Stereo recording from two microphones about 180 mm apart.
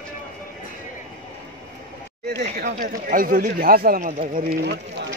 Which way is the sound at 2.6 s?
50° right (ahead or behind).